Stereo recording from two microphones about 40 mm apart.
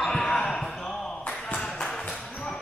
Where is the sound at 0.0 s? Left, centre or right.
Centre.